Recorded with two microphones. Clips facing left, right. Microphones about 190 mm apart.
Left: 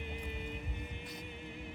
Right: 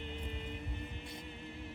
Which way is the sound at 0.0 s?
10° left (ahead or behind).